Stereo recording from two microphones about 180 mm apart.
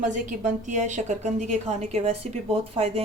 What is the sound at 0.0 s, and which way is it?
A woman's voice, 45° right (ahead or behind).